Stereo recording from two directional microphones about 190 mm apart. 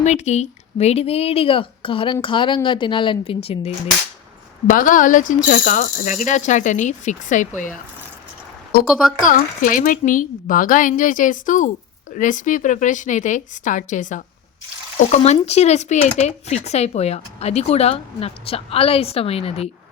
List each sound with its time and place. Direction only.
0.0 s speech: 35° left (ahead or behind)
4.6 s speech: 45° left (ahead or behind)
9.2 s speech: 45° left (ahead or behind)